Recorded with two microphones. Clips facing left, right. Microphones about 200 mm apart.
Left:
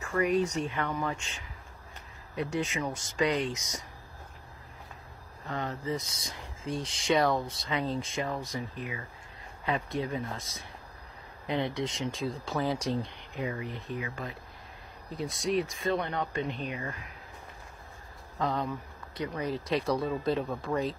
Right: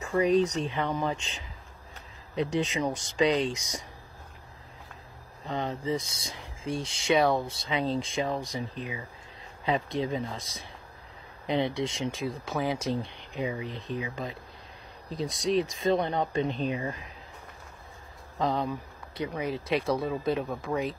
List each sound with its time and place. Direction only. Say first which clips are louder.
0.0 s speech: right 4 dB; 20° right (ahead or behind)
5.5 s speech: right 3 dB; 20° right (ahead or behind)
6.6 s speech: right 2 dB; 25° right (ahead or behind)
7.1 s speech: right 2 dB; 10° right (ahead or behind)
12.1 s speech: right 1 dB; centre (ahead or behind)
12.8 s speech: right 1 dB; 20° right (ahead or behind)
18.4 s speech: right 3 dB; 15° right (ahead or behind)